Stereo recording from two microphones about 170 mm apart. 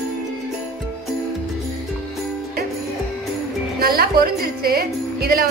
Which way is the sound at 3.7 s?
60° right (ahead or behind).